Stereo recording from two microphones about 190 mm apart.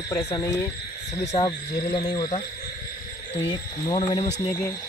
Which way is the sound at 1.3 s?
25° left (ahead or behind).